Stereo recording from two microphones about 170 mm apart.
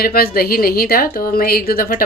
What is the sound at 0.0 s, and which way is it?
A woman's voice, 60° left (ahead or behind).